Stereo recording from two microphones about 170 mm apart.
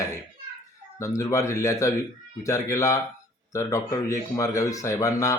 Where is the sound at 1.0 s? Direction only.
20° left (ahead or behind).